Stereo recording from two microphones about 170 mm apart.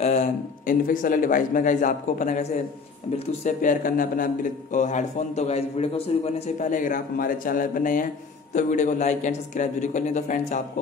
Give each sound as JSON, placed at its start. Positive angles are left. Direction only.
{"t": 0.0, "sound": "a man's voice", "side_deg": 45}